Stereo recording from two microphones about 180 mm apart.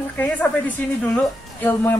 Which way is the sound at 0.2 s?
10° left (ahead or behind).